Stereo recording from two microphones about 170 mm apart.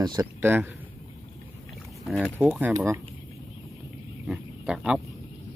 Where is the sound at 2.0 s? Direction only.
Centre (ahead or behind).